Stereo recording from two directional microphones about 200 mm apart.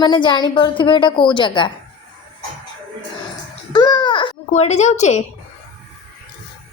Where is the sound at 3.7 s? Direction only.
20° left (ahead or behind).